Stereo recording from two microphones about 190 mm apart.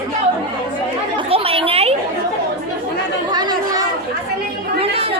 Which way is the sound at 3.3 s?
20° right (ahead or behind).